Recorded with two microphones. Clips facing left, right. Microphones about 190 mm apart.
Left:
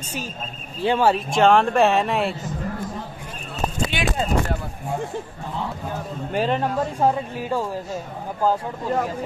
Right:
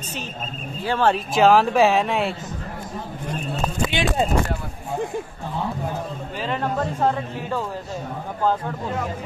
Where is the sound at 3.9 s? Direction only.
25° right (ahead or behind).